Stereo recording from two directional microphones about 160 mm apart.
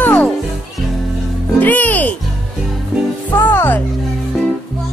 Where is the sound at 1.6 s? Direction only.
10° left (ahead or behind).